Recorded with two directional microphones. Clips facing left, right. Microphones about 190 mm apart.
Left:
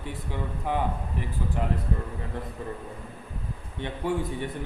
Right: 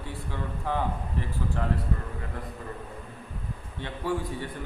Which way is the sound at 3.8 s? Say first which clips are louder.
Left 2 dB; 20° left (ahead or behind).